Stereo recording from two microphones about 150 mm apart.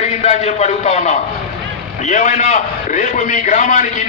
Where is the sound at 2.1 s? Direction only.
50° left (ahead or behind).